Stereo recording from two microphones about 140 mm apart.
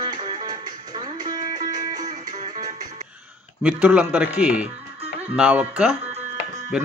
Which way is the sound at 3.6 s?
10° right (ahead or behind).